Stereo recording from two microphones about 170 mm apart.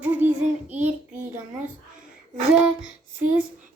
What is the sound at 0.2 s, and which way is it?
Child singing, 45° right (ahead or behind).